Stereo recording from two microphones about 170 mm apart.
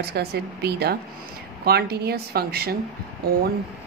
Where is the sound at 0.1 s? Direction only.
70° right (ahead or behind).